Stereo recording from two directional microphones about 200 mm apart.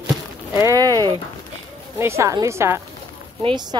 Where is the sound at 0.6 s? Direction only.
15° right (ahead or behind).